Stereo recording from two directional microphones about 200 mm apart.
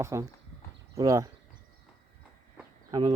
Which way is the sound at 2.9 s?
20° right (ahead or behind).